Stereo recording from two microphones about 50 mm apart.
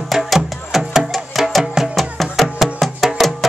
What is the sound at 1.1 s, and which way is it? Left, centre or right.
Music, centre.